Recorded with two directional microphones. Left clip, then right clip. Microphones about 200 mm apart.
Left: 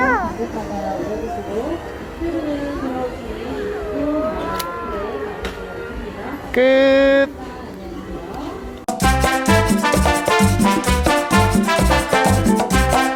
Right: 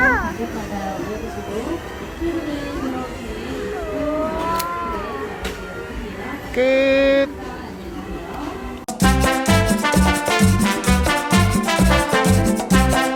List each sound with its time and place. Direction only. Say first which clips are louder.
6.6 s female singing: left 3 dB; 20° left (ahead or behind)
8.9 s music: left 2 dB; centre (ahead or behind)